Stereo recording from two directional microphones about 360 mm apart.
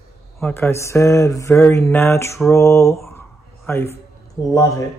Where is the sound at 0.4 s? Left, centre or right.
Centre.